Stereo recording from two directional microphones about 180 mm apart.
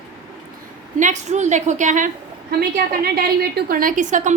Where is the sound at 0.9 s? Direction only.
40° right (ahead or behind).